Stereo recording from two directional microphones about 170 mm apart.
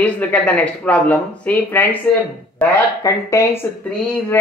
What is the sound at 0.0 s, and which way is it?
Speech, 10° left (ahead or behind).